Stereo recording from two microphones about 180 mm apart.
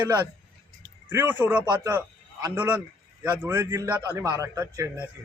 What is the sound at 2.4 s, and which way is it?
A man's voice, 10° right (ahead or behind).